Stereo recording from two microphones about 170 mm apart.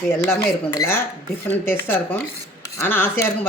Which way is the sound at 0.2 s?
15° left (ahead or behind).